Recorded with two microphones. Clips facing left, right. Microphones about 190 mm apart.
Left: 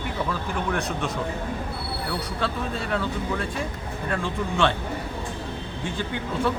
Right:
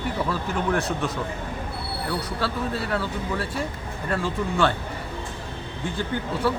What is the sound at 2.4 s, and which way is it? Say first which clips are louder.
Speech: right 1 dB; 5° right (ahead or behind).